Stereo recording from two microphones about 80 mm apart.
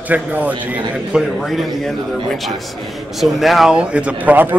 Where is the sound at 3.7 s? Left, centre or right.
Centre.